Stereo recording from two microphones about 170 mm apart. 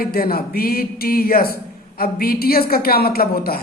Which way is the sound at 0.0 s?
60° left (ahead or behind).